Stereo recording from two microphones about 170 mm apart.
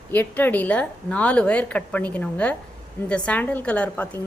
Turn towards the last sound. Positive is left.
turn(degrees=10)  # may be behind; listen again after turning